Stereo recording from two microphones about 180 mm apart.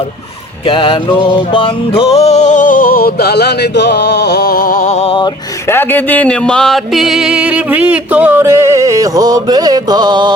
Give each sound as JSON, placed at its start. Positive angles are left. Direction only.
{"t": 0.6, "sound": "music", "side_deg": 30}
{"t": 5.6, "sound": "music", "side_deg": 10}